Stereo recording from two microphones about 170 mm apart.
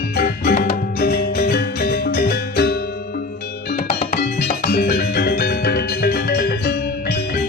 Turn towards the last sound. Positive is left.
turn(degrees=70)  # may be behind; listen again after turning